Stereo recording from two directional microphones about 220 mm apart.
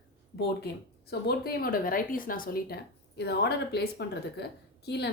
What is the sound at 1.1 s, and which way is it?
Speech, 45° left (ahead or behind).